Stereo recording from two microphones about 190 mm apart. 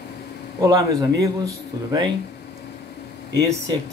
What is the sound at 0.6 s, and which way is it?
Speech, 20° right (ahead or behind).